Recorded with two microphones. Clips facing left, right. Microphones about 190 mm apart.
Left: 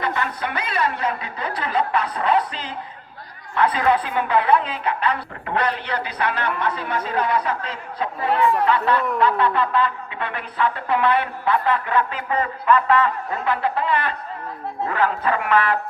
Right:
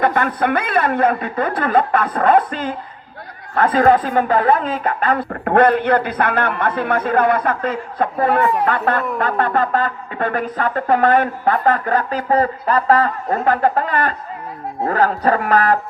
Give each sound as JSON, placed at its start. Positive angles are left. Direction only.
{"t": 0.0, "sound": "a woman's voice", "side_deg": -50}